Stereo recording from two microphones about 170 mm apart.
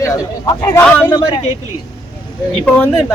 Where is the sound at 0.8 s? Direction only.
10° left (ahead or behind).